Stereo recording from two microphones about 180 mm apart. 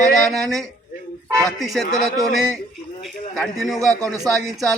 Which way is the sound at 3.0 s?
Centre (ahead or behind).